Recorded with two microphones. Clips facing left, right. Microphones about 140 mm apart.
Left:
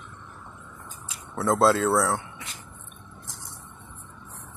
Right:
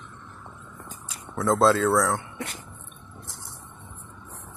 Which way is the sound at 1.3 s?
5° left (ahead or behind).